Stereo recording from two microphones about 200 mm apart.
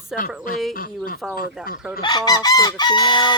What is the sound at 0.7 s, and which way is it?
Speech, 45° left (ahead or behind).